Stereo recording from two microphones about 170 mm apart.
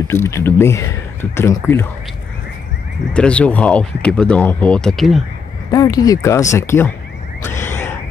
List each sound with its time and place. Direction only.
0.1 s speech: 15° left (ahead or behind)
3.1 s speech: 5° left (ahead or behind)
5.7 s speech: 20° left (ahead or behind)
7.4 s a sound: 15° left (ahead or behind)